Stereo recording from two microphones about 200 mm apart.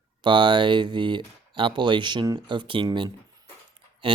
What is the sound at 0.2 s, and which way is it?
Speech, 25° right (ahead or behind).